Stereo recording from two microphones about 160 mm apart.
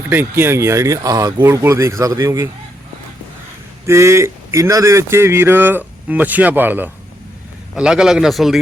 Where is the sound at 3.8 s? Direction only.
15° right (ahead or behind).